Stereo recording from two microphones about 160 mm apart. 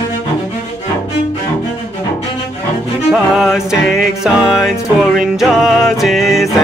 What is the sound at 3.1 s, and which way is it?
Music, 5° right (ahead or behind).